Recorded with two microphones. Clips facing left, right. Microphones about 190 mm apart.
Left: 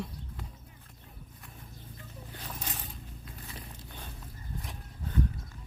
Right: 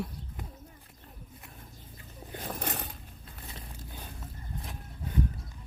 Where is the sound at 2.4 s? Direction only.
55° right (ahead or behind).